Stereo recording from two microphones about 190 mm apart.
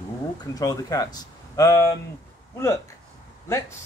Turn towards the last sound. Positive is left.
turn(degrees=15)  # may be behind; listen again after turning